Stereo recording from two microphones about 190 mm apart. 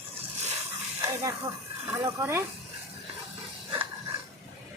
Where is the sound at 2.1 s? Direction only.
15° right (ahead or behind).